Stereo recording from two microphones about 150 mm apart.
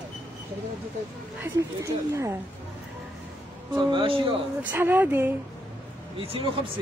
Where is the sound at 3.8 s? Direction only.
30° right (ahead or behind).